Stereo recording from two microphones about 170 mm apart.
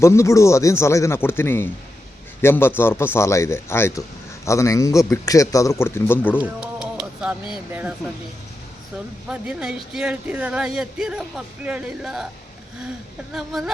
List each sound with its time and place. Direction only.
0.0 s a man's voice: 15° left (ahead or behind)
6.4 s music: 5° right (ahead or behind)
7.7 s speech: 10° right (ahead or behind)
9.3 s speech: 5° right (ahead or behind)
13.3 s speech: centre (ahead or behind)